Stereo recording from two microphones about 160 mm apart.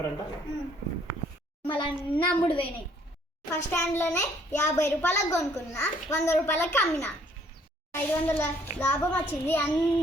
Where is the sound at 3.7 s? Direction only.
15° left (ahead or behind).